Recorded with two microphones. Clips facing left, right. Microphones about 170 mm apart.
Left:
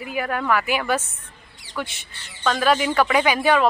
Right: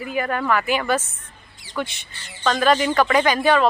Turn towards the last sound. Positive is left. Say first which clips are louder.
# right 1 dB
turn(degrees=10)  # may be behind; listen again after turning